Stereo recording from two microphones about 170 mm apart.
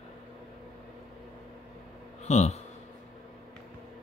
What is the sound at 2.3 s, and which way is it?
Speech, 40° left (ahead or behind).